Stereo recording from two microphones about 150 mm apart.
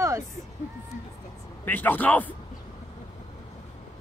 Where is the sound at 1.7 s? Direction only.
10° left (ahead or behind).